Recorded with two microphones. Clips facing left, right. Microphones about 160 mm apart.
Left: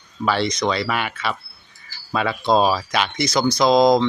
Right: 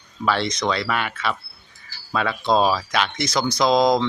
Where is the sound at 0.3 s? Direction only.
Centre (ahead or behind).